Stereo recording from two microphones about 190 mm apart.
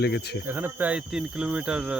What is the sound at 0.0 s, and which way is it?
Speech, 60° left (ahead or behind).